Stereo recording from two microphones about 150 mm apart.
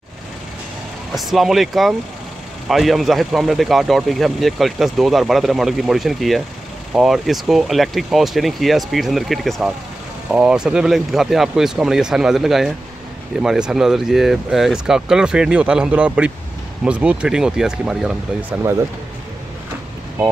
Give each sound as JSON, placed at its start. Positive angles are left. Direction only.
{"t": 1.1, "sound": "speech", "side_deg": 0}
{"t": 18.6, "sound": "speech", "side_deg": -20}